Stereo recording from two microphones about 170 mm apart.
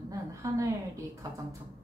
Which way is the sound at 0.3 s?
20° right (ahead or behind).